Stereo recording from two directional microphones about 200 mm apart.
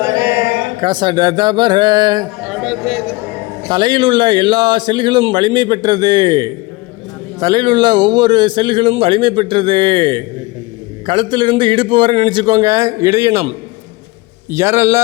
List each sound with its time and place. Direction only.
0.0 s a sound: 20° right (ahead or behind)
0.8 s a man's voice: 20° right (ahead or behind)
2.4 s a man's voice: 5° right (ahead or behind)
3.7 s a man's voice: 20° right (ahead or behind)
14.5 s a man's voice: 15° right (ahead or behind)